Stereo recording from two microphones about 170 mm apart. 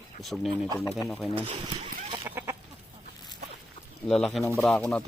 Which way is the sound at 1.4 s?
30° right (ahead or behind).